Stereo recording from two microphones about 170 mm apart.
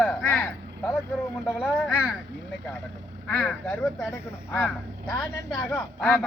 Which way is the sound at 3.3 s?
10° left (ahead or behind).